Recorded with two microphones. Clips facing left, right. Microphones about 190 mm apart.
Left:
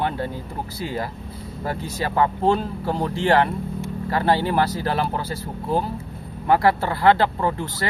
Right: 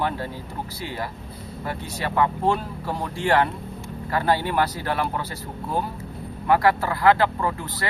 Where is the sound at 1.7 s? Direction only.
35° left (ahead or behind).